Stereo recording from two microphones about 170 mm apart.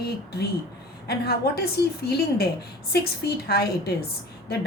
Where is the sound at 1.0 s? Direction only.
70° left (ahead or behind).